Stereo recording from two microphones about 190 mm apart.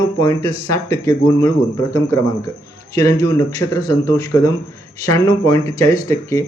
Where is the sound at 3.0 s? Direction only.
15° left (ahead or behind).